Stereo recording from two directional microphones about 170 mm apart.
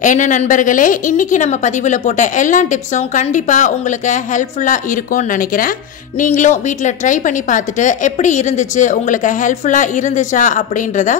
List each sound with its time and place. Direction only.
0.0 s a woman's voice: 50° left (ahead or behind)